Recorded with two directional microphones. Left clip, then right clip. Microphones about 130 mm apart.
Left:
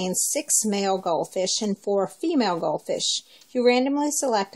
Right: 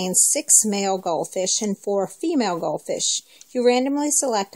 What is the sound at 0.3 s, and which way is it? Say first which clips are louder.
Speech: right 4 dB; 55° right (ahead or behind).